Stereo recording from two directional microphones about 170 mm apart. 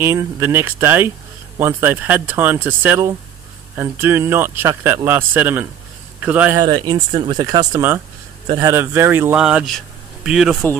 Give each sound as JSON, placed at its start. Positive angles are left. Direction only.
{"t": 0.0, "sound": "a man's voice", "side_deg": -15}
{"t": 6.6, "sound": "a man's voice", "side_deg": -25}